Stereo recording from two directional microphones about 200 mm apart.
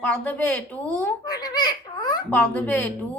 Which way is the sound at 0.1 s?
5° left (ahead or behind).